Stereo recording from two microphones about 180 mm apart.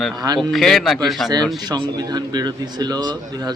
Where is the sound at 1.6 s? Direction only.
25° right (ahead or behind).